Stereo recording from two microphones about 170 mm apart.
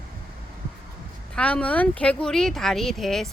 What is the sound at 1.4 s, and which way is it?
Speech, 5° left (ahead or behind).